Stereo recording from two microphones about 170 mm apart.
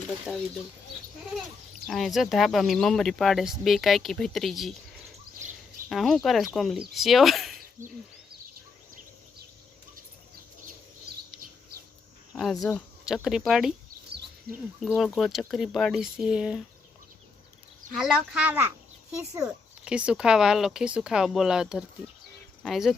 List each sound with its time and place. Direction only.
1.9 s speech: centre (ahead or behind)
5.9 s speech: centre (ahead or behind)
7.6 s a sound: 55° right (ahead or behind)
12.3 s speech: centre (ahead or behind)
14.8 s speech: centre (ahead or behind)
17.9 s speech: centre (ahead or behind)
19.8 s speech: 5° right (ahead or behind)